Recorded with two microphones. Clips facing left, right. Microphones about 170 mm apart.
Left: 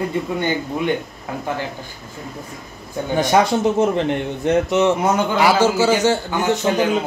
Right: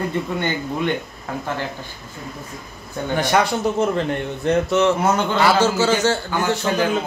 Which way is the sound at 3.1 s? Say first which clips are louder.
Left 3 dB; 20° left (ahead or behind).